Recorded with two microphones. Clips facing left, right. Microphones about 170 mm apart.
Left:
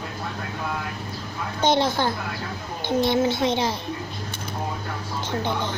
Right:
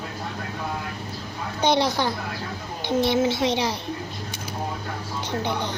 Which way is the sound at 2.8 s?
20° left (ahead or behind).